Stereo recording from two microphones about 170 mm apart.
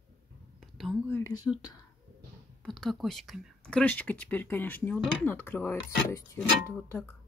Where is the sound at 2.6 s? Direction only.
Centre (ahead or behind).